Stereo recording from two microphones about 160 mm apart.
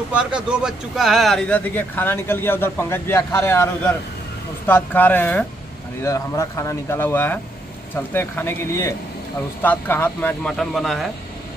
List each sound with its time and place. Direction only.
0.1 s a man's voice: 5° right (ahead or behind)